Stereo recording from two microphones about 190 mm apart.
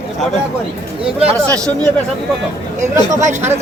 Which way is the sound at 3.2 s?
35° right (ahead or behind).